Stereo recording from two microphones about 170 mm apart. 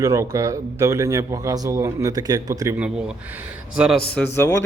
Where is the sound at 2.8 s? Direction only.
5° right (ahead or behind).